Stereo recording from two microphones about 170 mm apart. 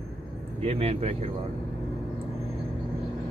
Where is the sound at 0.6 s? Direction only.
35° right (ahead or behind).